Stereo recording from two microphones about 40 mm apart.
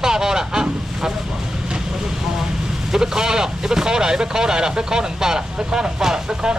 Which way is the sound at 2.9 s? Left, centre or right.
Centre.